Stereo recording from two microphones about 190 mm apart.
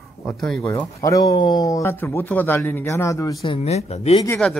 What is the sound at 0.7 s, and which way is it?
Speech, 15° left (ahead or behind).